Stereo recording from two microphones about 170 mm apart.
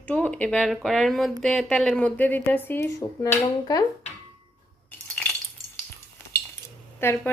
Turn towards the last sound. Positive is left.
turn(degrees=15)  # may be behind; listen again after turning